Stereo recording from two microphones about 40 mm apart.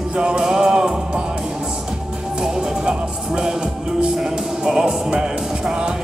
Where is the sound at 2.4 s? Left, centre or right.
Centre.